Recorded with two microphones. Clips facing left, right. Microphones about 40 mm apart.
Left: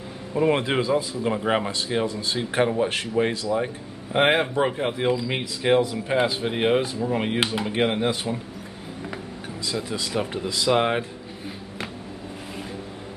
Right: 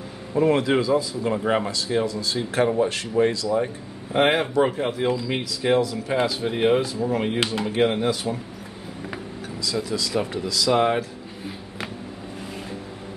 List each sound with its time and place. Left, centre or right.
0.5 s speech: left
1.2 s speech: centre
1.7 s speech: left
3.6 s speech: centre
5.6 s speech: left
6.4 s speech: centre
9.6 s speech: left